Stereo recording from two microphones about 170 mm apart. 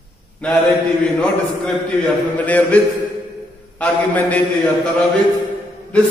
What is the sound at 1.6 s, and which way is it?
A man's voice, 5° left (ahead or behind).